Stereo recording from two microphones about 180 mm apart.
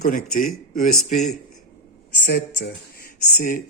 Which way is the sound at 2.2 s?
65° left (ahead or behind).